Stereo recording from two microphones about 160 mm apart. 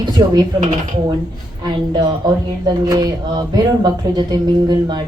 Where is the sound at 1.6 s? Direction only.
25° right (ahead or behind).